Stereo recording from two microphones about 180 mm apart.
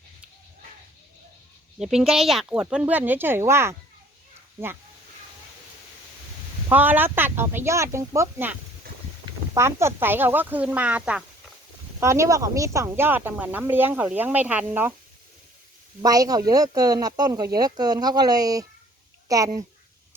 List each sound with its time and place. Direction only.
1.8 s speech: 5° right (ahead or behind)
6.7 s speech: 10° right (ahead or behind)
9.6 s speech: 15° right (ahead or behind)
16.0 s speech: 20° right (ahead or behind)